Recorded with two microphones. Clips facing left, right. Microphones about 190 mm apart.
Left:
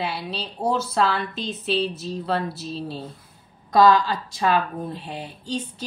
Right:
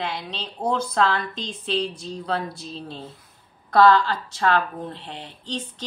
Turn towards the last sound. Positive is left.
turn(degrees=10)  # may be behind; listen again after turning